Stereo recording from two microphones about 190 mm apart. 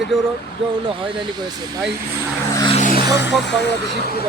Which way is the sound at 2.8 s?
45° left (ahead or behind).